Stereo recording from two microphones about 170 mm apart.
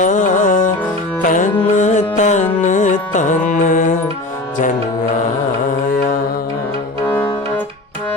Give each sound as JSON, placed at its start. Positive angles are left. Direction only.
{"t": 0.0, "sound": "music", "side_deg": 45}